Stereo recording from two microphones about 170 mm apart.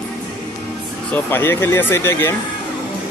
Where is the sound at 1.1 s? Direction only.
10° left (ahead or behind).